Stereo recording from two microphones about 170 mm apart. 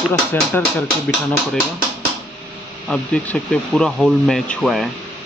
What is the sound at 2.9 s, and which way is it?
Speech, 5° left (ahead or behind).